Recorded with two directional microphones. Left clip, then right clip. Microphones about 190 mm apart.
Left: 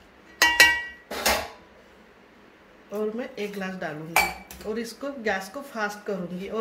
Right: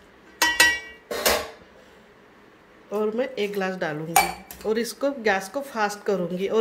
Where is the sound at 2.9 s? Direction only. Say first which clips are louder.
Right 5 dB; 40° right (ahead or behind).